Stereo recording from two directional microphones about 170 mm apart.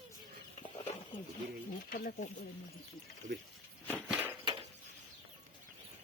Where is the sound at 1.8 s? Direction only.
55° left (ahead or behind).